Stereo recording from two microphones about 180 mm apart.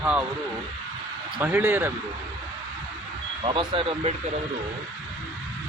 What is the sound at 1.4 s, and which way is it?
Speech, 10° right (ahead or behind).